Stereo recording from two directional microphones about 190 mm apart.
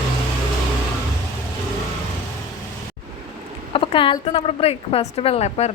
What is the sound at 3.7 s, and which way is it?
A woman's voice, 25° left (ahead or behind).